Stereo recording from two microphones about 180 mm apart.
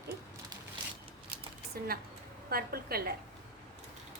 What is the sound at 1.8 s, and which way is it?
A woman's voice, 55° right (ahead or behind).